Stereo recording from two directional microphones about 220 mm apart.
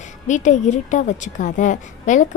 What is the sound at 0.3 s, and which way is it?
A woman's voice, 35° left (ahead or behind).